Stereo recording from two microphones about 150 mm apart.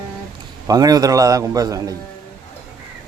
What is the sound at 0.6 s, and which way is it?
A man's voice, 25° right (ahead or behind).